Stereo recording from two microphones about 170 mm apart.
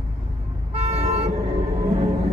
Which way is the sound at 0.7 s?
40° right (ahead or behind).